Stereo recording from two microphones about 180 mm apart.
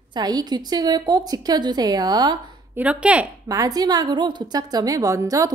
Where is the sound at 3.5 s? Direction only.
20° right (ahead or behind).